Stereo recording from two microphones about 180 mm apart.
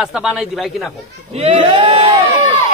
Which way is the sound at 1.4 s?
30° right (ahead or behind).